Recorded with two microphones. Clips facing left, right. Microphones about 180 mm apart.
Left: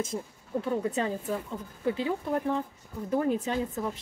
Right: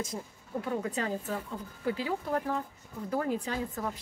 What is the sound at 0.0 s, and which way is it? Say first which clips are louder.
A woman's voice: left 4 dB; 25° left (ahead or behind).